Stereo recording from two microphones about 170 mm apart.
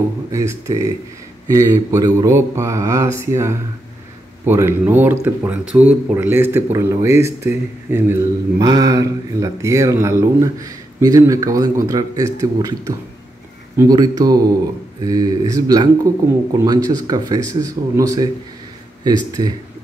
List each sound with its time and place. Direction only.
0.3 s speech: 20° right (ahead or behind)